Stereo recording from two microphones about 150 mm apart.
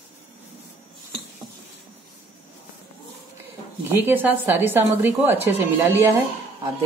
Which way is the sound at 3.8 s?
15° right (ahead or behind).